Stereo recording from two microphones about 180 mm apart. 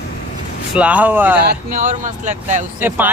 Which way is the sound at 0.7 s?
5° right (ahead or behind).